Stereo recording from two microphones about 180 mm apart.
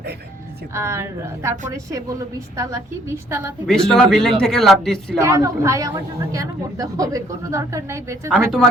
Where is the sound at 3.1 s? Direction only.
15° right (ahead or behind).